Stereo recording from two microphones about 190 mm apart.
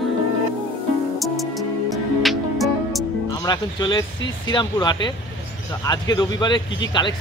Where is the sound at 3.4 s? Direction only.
20° left (ahead or behind).